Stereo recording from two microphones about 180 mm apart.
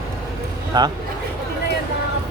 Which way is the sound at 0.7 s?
25° right (ahead or behind).